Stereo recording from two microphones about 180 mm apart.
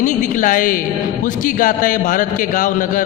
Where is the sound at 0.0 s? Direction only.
45° left (ahead or behind).